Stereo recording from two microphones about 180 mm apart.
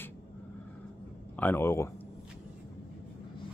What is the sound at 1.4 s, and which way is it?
Speech, 10° left (ahead or behind).